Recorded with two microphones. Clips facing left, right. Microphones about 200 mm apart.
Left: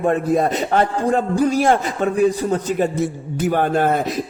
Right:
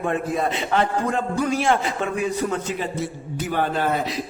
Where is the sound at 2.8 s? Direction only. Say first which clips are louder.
Left 8 dB; 50° left (ahead or behind).